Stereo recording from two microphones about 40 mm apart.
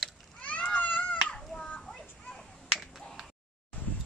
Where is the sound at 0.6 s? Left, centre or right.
Left.